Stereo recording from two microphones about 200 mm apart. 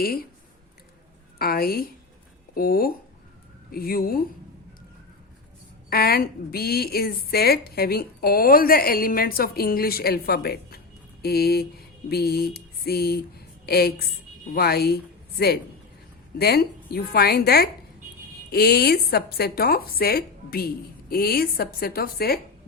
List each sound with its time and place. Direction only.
0.0 s a woman's voice: 45° left (ahead or behind)
1.4 s a woman's voice: 50° left (ahead or behind)
5.9 s a woman's voice: 50° left (ahead or behind)